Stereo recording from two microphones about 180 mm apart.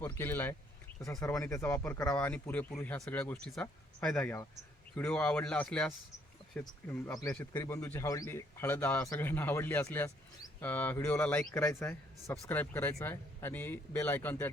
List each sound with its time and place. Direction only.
0.0 s a man's voice: 10° left (ahead or behind)
7.6 s a man's voice: 15° left (ahead or behind)